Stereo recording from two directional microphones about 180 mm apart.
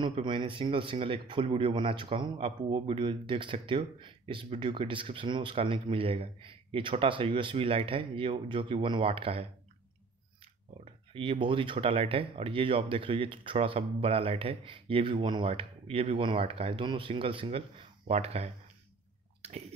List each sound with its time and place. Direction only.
0.0 s speech: 25° right (ahead or behind)
11.1 s speech: 30° right (ahead or behind)